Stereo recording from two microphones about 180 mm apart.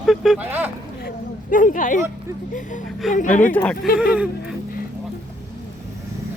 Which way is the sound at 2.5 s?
45° left (ahead or behind).